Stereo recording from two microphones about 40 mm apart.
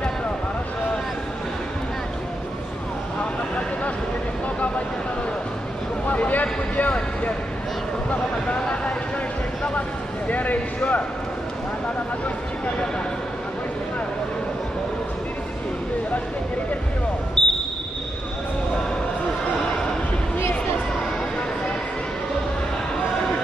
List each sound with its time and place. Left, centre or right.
6.0 s vehicle: left
9.8 s a sound: left
17.4 s basketball bounce: left